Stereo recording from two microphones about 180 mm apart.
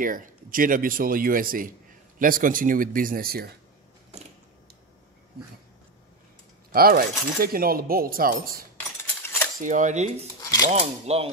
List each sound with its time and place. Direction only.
0.0 s speech: 50° right (ahead or behind)
4.1 s a sound: 35° right (ahead or behind)
6.7 s speech: 55° right (ahead or behind); by 11.2 s 35° right (ahead or behind)